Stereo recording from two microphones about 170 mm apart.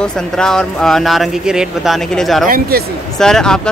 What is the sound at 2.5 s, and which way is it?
Speech, 65° right (ahead or behind).